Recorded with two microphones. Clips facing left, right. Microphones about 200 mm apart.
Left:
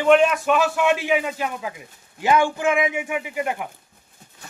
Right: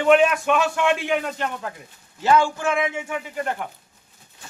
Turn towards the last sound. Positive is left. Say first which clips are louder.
# left 2 dB
turn(degrees=10)  # may be behind; listen again after turning